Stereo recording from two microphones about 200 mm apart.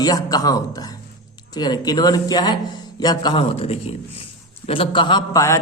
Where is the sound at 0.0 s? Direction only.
20° left (ahead or behind).